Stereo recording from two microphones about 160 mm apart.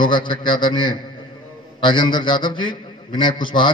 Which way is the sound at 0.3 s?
30° left (ahead or behind).